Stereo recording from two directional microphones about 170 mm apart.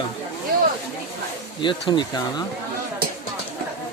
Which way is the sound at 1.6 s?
25° left (ahead or behind).